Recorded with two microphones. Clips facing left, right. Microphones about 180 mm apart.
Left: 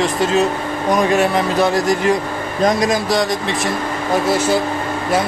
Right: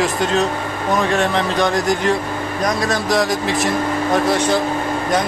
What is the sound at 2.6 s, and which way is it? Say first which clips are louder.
Speech: left 5 dB; 25° left (ahead or behind).